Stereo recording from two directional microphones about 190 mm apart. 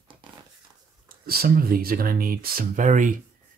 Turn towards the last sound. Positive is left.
turn(degrees=-40)  # may be behind; listen again after turning